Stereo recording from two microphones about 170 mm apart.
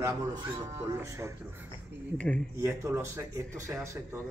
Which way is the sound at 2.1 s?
5° left (ahead or behind).